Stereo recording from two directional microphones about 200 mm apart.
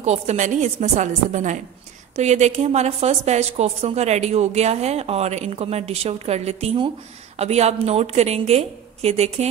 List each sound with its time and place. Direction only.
0.0 s a woman's voice: 35° right (ahead or behind)